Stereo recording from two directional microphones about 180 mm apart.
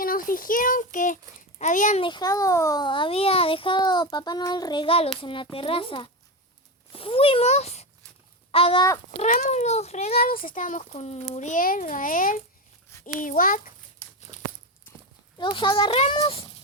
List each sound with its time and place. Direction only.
0.0 s a child's voice: 50° left (ahead or behind)
2.0 s a child's voice: 25° left (ahead or behind)
9.3 s a child's voice: 40° left (ahead or behind)
15.4 s a child's voice: 25° left (ahead or behind)